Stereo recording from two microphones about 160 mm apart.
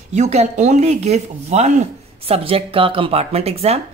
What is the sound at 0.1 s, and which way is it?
A woman's voice, 45° right (ahead or behind).